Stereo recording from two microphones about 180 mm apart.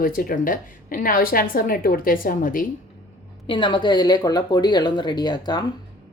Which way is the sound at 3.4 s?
25° left (ahead or behind).